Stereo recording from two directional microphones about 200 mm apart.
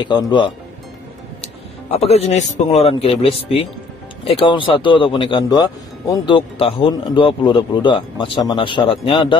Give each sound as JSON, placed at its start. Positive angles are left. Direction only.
{"t": 0.0, "sound": "a man's voice", "side_deg": 25}